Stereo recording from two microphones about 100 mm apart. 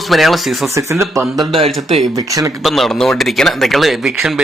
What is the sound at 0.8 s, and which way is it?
Speech, 30° right (ahead or behind).